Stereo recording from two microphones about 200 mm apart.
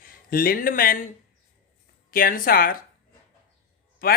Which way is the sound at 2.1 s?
45° left (ahead or behind).